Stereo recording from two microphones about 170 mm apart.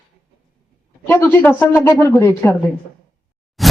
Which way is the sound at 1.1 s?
10° left (ahead or behind).